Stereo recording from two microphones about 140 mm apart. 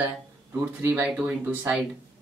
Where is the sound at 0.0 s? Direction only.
15° right (ahead or behind).